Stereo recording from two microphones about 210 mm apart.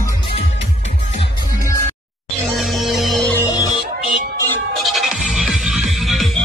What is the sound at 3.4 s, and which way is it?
Music, 15° left (ahead or behind).